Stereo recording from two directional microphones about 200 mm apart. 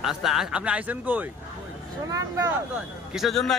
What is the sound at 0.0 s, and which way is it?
Speech, centre (ahead or behind).